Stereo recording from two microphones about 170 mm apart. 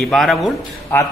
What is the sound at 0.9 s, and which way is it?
Speech, 10° left (ahead or behind).